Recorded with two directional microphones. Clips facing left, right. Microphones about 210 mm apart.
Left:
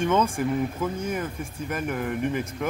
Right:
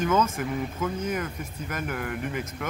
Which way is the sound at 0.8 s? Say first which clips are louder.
Left 1 dB; 30° left (ahead or behind).